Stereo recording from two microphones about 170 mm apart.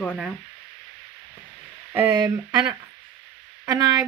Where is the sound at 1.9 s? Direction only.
10° right (ahead or behind).